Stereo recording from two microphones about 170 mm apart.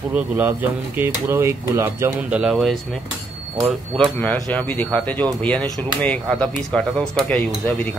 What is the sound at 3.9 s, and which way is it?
Speech, 5° left (ahead or behind).